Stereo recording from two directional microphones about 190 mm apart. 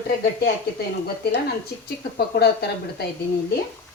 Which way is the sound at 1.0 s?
60° left (ahead or behind).